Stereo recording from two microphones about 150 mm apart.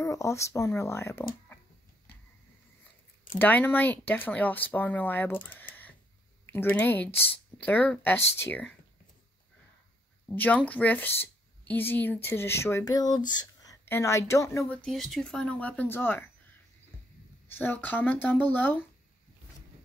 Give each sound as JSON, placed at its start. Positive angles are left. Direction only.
{"t": 0.0, "sound": "speech", "side_deg": 20}
{"t": 3.3, "sound": "speech", "side_deg": 10}
{"t": 10.2, "sound": "speech", "side_deg": 10}
{"t": 13.8, "sound": "speech", "side_deg": 15}
{"t": 14.7, "sound": "speech", "side_deg": 5}
{"t": 17.6, "sound": "speech", "side_deg": 10}